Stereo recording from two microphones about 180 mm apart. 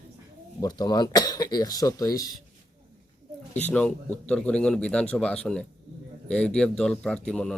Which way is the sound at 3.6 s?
10° left (ahead or behind).